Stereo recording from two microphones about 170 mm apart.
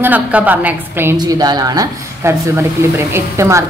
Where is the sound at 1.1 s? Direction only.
25° right (ahead or behind).